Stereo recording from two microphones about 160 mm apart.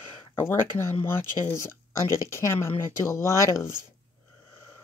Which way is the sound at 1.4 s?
20° left (ahead or behind).